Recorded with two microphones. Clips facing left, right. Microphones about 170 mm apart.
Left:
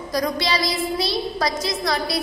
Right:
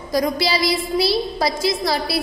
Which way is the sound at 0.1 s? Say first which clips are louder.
Right 3 dB; 30° right (ahead or behind).